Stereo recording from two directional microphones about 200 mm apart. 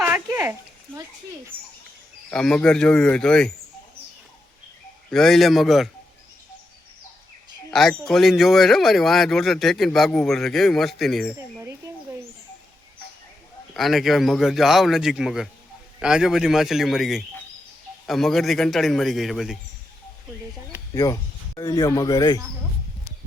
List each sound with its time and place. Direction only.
0.0 s a sound: 10° right (ahead or behind)
2.3 s speech: 5° left (ahead or behind)
5.1 s speech: centre (ahead or behind)
7.7 s speech: centre (ahead or behind)
13.7 s speech: centre (ahead or behind)
20.9 s speech: 15° left (ahead or behind)